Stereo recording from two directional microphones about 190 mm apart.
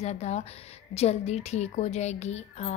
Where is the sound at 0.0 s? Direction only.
35° left (ahead or behind).